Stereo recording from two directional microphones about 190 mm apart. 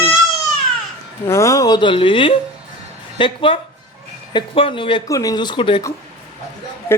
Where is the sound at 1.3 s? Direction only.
15° left (ahead or behind).